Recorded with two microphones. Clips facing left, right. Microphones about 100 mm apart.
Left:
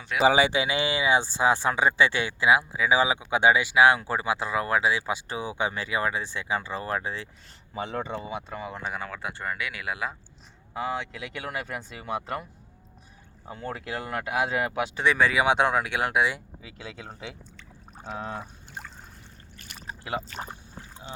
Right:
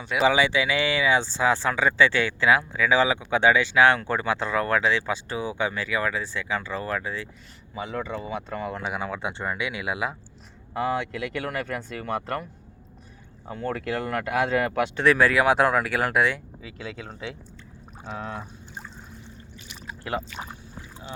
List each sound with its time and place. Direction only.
0.0 s speech: centre (ahead or behind)
0.4 s speech: 20° left (ahead or behind)
7.8 s speech: 35° left (ahead or behind)
8.4 s speech: 5° left (ahead or behind)
8.9 s speech: 15° right (ahead or behind)
10.8 s speech: centre (ahead or behind)
16.6 s speech: 25° left (ahead or behind)
19.5 s a sound: 50° left (ahead or behind)
20.3 s pour: 45° left (ahead or behind)